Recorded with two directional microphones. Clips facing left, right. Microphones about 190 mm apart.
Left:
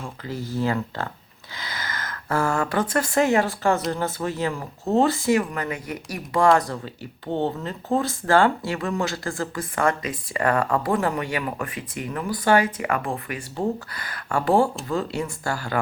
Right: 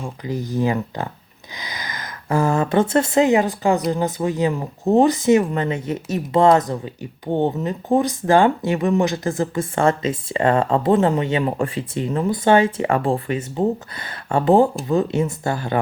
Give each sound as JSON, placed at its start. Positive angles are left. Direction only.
{"t": 0.0, "sound": "speech", "side_deg": -15}